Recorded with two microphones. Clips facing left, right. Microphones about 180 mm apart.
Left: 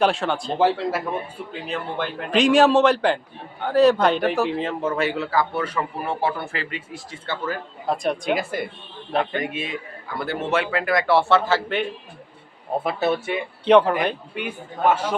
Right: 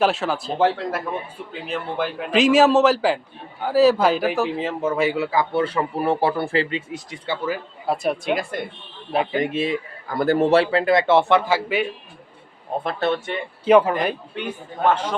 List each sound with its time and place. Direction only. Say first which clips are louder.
0.0 s a man's voice: even; centre (ahead or behind)
5.5 s a man's voice: right 4 dB; 30° right (ahead or behind); by 9.4 s 5° right (ahead or behind)
9.4 s a man's voice: right 6 dB; 30° right (ahead or behind); by 11.9 s 10° right (ahead or behind)
12.8 s a man's voice: even; 5° left (ahead or behind)
13.7 s a man's voice: even; 5° right (ahead or behind)
14.3 s a man's voice: right 1 dB; 10° left (ahead or behind)